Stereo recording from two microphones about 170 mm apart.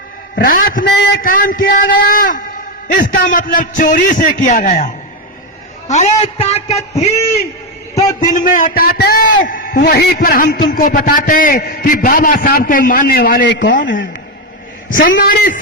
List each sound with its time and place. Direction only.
0.3 s a man's voice: 55° left (ahead or behind); by 7.1 s 40° left (ahead or behind)
8.2 s a man's voice: 50° left (ahead or behind)
9.8 s a man's voice: 75° left (ahead or behind)
14.8 s a man's voice: 60° left (ahead or behind)